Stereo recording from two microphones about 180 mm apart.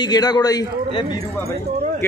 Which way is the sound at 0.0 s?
20° left (ahead or behind).